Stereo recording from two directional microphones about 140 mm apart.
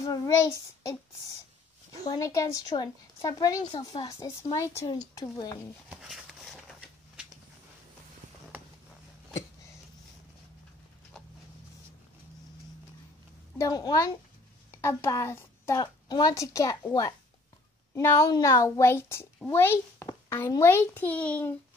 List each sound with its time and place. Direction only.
0.0 s child singing: 25° left (ahead or behind)
2.0 s a woman's voice: 25° left (ahead or behind)
5.9 s a sound: 5° right (ahead or behind)
13.6 s a woman's voice: 25° left (ahead or behind)
15.8 s a woman's voice: 30° left (ahead or behind); by 21.5 s 10° left (ahead or behind)